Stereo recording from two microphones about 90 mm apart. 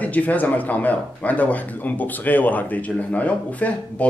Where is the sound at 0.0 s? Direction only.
15° left (ahead or behind).